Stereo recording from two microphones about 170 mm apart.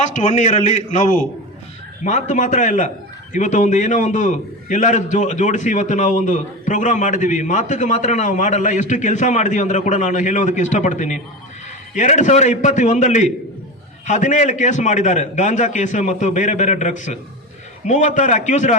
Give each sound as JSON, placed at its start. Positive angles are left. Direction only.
{"t": 0.0, "sound": "a man's voice", "side_deg": 45}